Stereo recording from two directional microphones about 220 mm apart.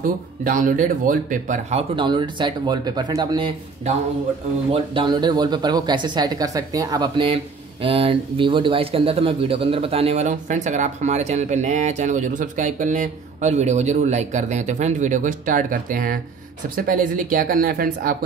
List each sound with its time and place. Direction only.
0.0 s speech: 35° right (ahead or behind)